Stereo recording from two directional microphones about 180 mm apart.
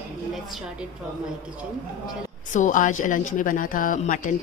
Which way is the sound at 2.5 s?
45° left (ahead or behind).